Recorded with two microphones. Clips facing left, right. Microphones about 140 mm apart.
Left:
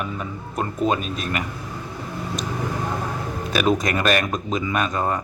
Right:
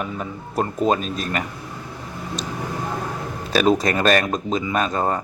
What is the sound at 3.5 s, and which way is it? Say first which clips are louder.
A man's voice: right 3 dB; 30° right (ahead or behind).